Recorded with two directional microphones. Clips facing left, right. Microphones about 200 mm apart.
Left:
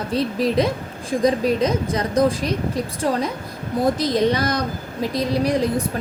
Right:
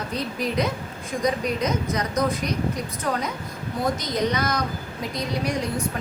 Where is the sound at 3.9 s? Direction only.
30° left (ahead or behind).